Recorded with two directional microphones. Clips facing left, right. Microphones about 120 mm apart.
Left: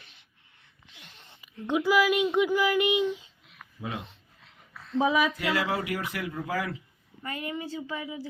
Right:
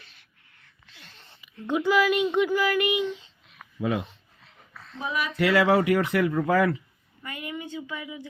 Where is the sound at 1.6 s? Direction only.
10° left (ahead or behind).